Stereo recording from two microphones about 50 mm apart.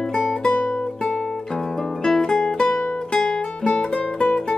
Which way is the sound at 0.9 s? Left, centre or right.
Centre.